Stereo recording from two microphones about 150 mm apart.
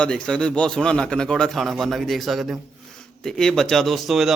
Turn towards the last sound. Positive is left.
turn(degrees=0)  # may be behind; listen again after turning